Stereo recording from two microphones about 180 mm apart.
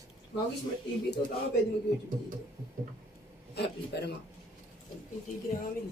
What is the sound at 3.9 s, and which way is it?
Speech, 65° left (ahead or behind).